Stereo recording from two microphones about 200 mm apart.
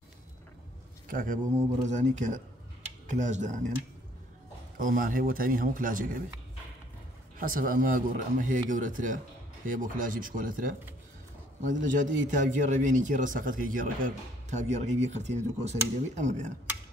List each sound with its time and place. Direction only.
1.0 s speech: 40° right (ahead or behind)
4.7 s speech: 40° right (ahead or behind)
7.3 s speech: 45° right (ahead or behind)